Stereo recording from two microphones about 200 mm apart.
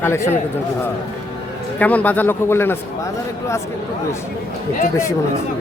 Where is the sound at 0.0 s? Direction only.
10° left (ahead or behind).